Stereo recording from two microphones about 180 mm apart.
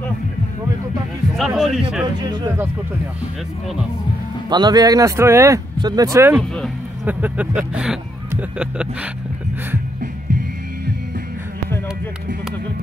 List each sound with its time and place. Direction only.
1.3 s a sound: centre (ahead or behind)
2.2 s speech: 20° right (ahead or behind)
4.5 s speech: 25° right (ahead or behind); by 9.1 s 5° right (ahead or behind)